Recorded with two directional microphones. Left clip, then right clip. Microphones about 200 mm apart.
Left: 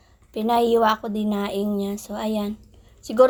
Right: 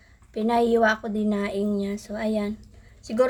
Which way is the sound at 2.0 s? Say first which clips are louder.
Even; 20° left (ahead or behind).